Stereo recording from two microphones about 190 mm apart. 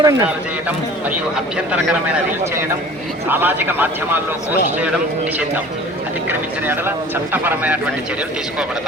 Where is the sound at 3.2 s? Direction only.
10° right (ahead or behind).